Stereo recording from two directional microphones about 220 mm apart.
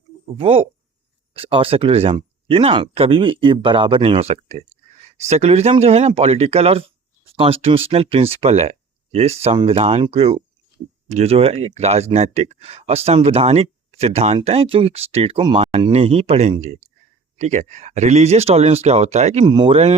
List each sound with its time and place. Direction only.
0.3 s speech: 25° right (ahead or behind)